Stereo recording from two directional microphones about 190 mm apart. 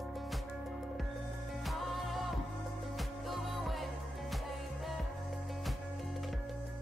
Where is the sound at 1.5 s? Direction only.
Centre (ahead or behind).